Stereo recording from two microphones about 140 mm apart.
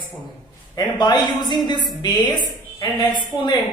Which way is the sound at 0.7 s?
30° left (ahead or behind).